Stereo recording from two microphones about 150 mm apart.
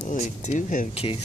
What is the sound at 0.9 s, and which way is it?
Speech, 40° left (ahead or behind).